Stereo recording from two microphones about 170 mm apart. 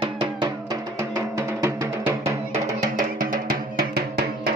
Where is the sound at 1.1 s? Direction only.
15° right (ahead or behind).